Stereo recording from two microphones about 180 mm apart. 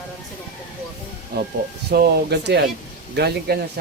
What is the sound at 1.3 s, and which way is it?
Speech, 60° right (ahead or behind).